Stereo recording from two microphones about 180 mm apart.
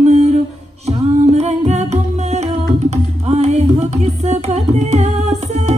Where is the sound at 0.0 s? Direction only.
35° right (ahead or behind).